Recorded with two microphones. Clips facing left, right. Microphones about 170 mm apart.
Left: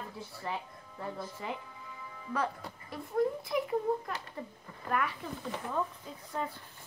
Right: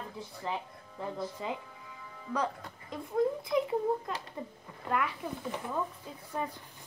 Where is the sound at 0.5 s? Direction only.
20° right (ahead or behind).